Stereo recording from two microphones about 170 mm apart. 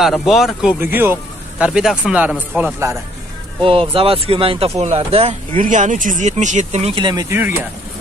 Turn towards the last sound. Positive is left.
turn(degrees=-15)  # may be behind; listen again after turning